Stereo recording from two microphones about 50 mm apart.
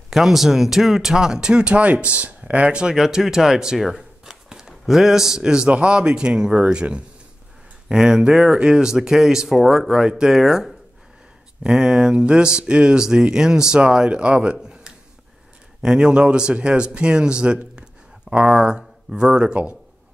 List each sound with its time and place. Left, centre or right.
0.1 s a man's voice: centre
11.6 s speech: centre
14.6 s a sound: centre
15.8 s a man's voice: centre
17.7 s a sound: centre
18.5 s a man's voice: centre